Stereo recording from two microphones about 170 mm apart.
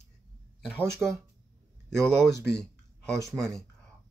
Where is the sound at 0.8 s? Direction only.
15° right (ahead or behind).